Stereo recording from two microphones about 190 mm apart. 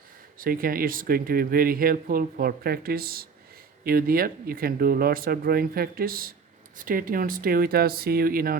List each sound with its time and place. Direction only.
0.3 s speech: 50° right (ahead or behind)